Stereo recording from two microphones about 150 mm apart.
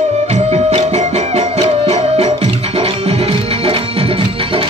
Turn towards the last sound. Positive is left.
turn(degrees=-35)  # may be behind; listen again after turning